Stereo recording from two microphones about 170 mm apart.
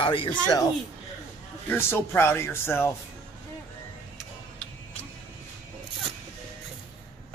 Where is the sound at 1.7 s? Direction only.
15° left (ahead or behind).